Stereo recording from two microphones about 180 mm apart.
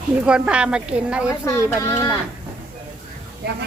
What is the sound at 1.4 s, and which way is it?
Speech, 15° left (ahead or behind).